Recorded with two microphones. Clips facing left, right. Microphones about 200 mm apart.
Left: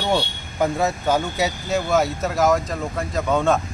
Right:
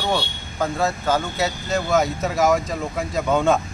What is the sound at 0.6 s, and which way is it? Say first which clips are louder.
Speech: left 2 dB; 15° left (ahead or behind).